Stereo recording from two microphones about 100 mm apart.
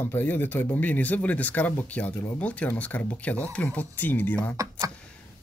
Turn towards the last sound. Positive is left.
turn(degrees=-35)  # may be behind; listen again after turning